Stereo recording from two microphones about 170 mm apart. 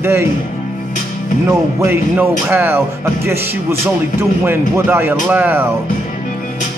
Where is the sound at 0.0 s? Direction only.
15° right (ahead or behind).